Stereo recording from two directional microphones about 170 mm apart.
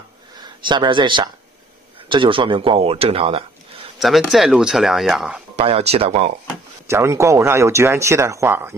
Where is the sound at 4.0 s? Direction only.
Centre (ahead or behind).